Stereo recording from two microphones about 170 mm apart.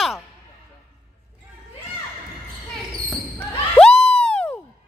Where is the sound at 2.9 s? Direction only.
5° left (ahead or behind).